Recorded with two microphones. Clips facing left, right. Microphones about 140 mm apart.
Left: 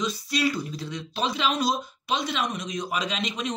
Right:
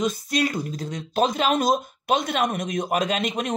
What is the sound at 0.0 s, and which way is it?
Speech, 50° right (ahead or behind).